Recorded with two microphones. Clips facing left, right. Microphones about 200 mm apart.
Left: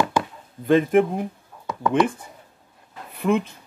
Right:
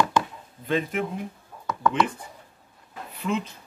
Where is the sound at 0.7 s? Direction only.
50° left (ahead or behind).